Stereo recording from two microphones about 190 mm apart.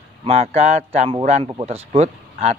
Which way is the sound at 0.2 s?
35° right (ahead or behind).